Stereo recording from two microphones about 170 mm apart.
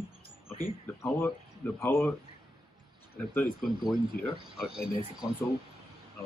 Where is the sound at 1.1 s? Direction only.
15° left (ahead or behind).